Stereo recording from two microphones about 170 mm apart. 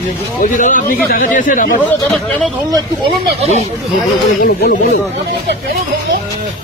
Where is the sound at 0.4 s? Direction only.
50° left (ahead or behind).